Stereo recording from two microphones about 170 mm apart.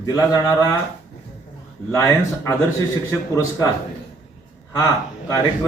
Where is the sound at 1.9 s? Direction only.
15° left (ahead or behind).